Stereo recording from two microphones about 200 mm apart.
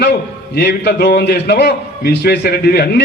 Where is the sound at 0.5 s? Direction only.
55° left (ahead or behind).